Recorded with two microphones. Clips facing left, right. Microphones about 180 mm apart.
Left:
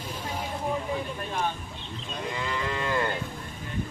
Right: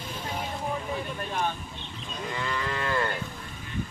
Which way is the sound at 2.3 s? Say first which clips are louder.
Even; 20° left (ahead or behind).